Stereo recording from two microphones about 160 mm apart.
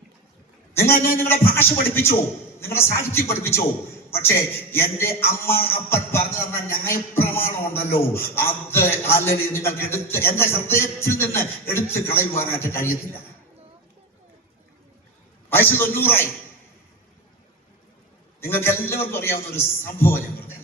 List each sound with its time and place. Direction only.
1.2 s a man's voice: 15° left (ahead or behind)
15.4 s a man's voice: 15° left (ahead or behind)
18.3 s a man's voice: 15° left (ahead or behind)